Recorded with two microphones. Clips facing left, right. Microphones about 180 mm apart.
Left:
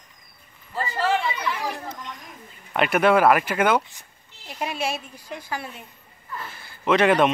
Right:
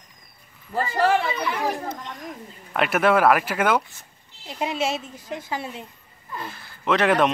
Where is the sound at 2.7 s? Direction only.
Centre (ahead or behind).